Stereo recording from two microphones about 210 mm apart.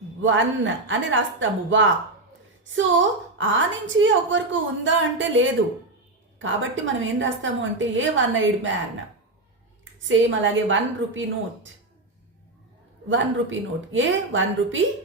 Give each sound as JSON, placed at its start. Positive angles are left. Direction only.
{"t": 0.2, "sound": "a woman's voice", "side_deg": -65}
{"t": 10.1, "sound": "a woman's voice", "side_deg": -65}
{"t": 13.1, "sound": "a woman's voice", "side_deg": -65}